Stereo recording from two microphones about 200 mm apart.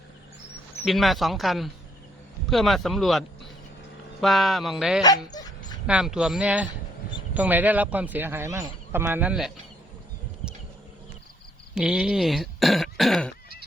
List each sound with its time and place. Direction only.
0.9 s speech: centre (ahead or behind)
5.0 s dog: 20° left (ahead or behind)
5.9 s a man's voice: 5° right (ahead or behind)
11.7 s speech: 5° right (ahead or behind)